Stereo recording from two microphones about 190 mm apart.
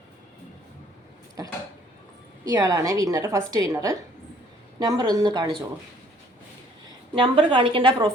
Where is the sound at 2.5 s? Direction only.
20° right (ahead or behind).